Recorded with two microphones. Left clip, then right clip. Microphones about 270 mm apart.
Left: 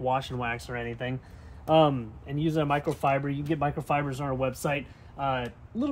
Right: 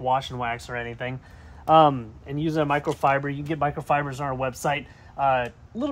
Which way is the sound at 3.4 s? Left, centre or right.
Centre.